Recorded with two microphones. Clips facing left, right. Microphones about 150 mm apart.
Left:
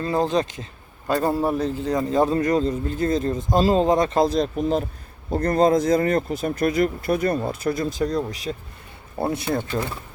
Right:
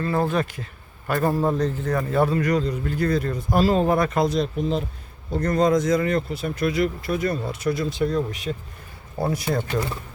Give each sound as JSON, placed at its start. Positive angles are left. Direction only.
{"t": 0.0, "sound": "a man's voice", "side_deg": 20}
{"t": 4.4, "sound": "speech", "side_deg": 45}
{"t": 5.5, "sound": "a man's voice", "side_deg": 30}